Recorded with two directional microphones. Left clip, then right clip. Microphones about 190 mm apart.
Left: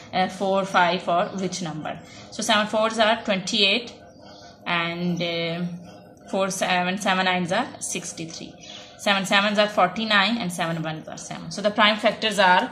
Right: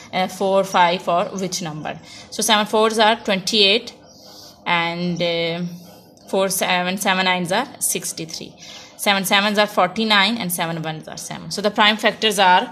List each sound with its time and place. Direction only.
0.1 s a woman's voice: 55° right (ahead or behind)